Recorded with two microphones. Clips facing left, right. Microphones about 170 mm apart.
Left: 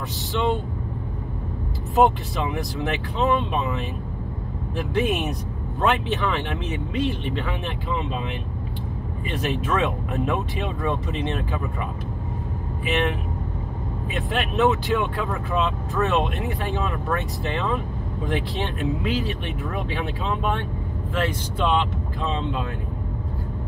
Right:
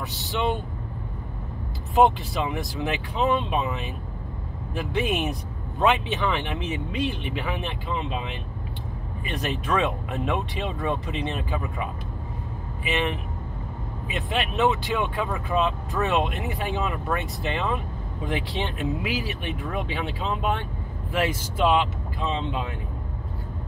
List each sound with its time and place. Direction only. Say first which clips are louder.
2.0 s speech: left 1 dB; centre (ahead or behind)
9.4 s speech: left 1 dB; centre (ahead or behind)
14.1 s speech: left 2 dB; centre (ahead or behind)